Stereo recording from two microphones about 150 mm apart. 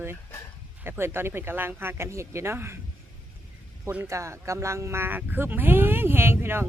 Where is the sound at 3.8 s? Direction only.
15° right (ahead or behind).